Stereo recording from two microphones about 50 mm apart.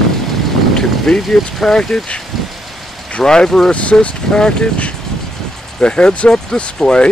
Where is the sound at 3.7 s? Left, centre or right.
Left.